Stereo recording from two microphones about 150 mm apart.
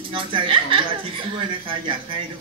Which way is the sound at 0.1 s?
35° right (ahead or behind).